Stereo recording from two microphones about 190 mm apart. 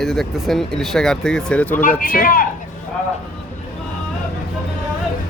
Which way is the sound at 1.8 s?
45° left (ahead or behind).